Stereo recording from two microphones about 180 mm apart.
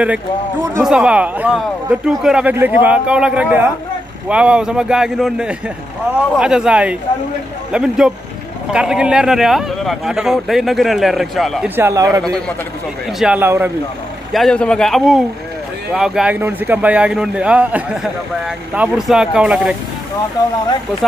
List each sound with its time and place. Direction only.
0.7 s a man's voice: 5° right (ahead or behind)
11.7 s speech: 15° right (ahead or behind)
13.2 s speech: 10° right (ahead or behind)
14.3 s a man's voice: 5° left (ahead or behind)